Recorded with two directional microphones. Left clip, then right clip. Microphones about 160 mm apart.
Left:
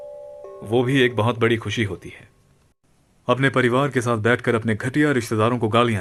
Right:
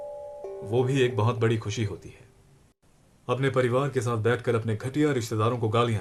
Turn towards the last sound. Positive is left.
turn(degrees=55)  # may be behind; listen again after turning